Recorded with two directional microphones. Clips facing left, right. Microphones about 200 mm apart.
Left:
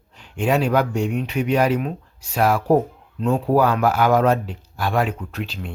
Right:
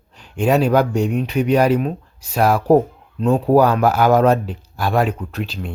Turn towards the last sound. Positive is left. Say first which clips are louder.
# right 3 dB
turn(degrees=-40)  # may be behind; listen again after turning